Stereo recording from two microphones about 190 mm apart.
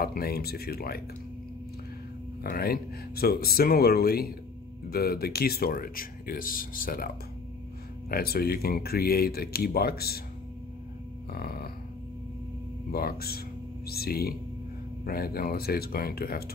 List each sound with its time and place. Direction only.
0.0 s speech: 55° left (ahead or behind)
2.4 s speech: 50° left (ahead or behind)
8.1 s speech: 55° left (ahead or behind)
11.3 s speech: 55° left (ahead or behind)
12.9 s speech: 55° left (ahead or behind)